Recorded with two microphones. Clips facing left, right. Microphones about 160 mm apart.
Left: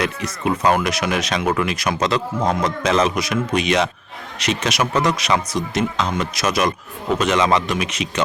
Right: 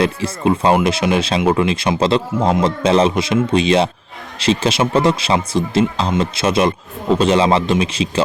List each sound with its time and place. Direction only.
0.0 s speech: 30° right (ahead or behind)